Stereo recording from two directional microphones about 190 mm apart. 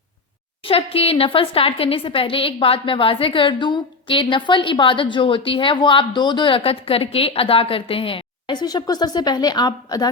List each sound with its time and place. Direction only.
0.6 s a woman's voice: 30° left (ahead or behind)